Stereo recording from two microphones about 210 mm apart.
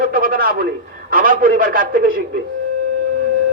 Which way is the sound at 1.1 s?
40° right (ahead or behind).